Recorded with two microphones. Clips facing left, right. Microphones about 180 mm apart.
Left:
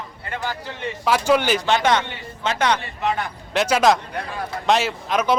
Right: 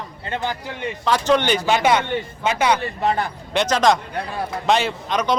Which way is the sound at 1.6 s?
10° right (ahead or behind).